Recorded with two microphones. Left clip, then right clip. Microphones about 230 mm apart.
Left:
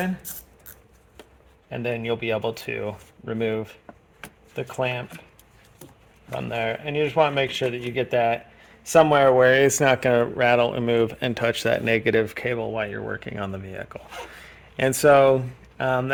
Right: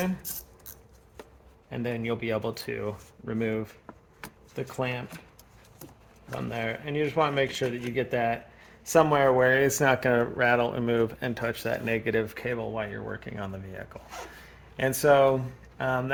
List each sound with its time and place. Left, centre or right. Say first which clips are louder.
1.7 s speech: left 5 dB; left
6.5 s speech: left 6 dB; left